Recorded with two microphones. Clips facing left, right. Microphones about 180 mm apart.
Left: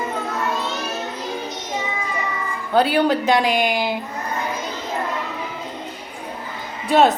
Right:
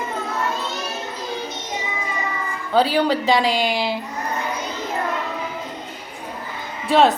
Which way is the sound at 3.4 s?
50° left (ahead or behind).